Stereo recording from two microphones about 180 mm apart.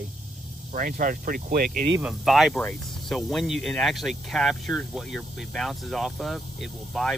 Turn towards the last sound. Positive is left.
turn(degrees=0)  # may be behind; listen again after turning